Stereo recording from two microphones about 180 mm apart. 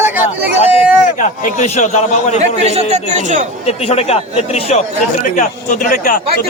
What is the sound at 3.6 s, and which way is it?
A man's voice, 35° left (ahead or behind).